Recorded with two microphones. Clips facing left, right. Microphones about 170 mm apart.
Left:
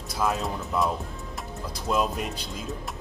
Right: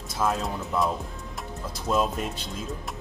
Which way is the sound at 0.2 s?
Centre (ahead or behind).